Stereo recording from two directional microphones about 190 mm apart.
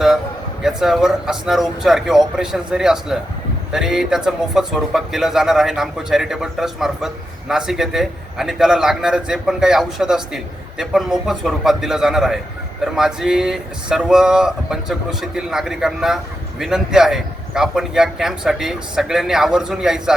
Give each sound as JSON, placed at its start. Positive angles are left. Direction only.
{"t": 0.6, "sound": "speech", "side_deg": 0}